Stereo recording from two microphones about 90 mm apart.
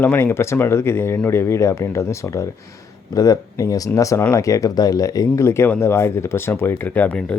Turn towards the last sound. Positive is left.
turn(degrees=15)  # may be behind; listen again after turning